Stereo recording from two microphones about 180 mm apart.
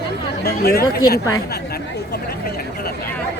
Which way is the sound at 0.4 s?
60° left (ahead or behind).